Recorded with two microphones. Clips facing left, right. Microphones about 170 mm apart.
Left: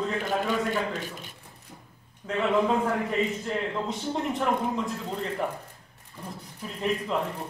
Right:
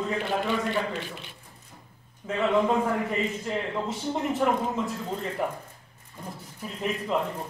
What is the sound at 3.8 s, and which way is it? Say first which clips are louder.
Speech: right 1 dB; 5° right (ahead or behind).